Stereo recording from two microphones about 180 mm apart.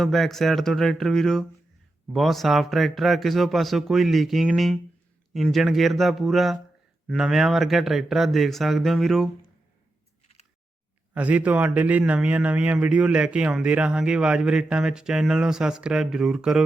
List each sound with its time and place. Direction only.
0.0 s a man's voice: centre (ahead or behind)
11.1 s a man's voice: 10° right (ahead or behind)